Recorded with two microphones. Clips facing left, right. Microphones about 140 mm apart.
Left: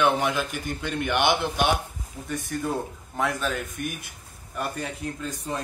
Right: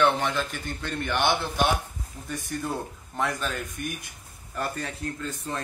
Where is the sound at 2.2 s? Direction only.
Centre (ahead or behind).